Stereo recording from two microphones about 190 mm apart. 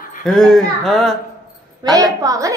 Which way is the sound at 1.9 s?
20° right (ahead or behind).